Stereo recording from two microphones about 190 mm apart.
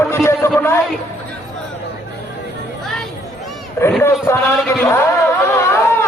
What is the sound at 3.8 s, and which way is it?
Speech, 10° left (ahead or behind).